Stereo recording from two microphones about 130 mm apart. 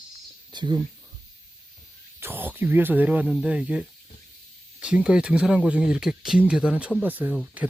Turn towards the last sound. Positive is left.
turn(degrees=-10)  # may be behind; listen again after turning